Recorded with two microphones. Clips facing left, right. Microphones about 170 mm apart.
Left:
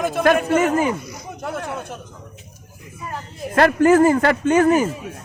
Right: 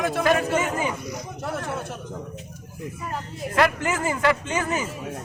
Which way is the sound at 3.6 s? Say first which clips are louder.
Left 9 dB; 55° left (ahead or behind).